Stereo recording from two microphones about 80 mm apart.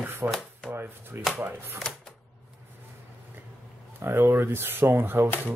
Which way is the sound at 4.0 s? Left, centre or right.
Right.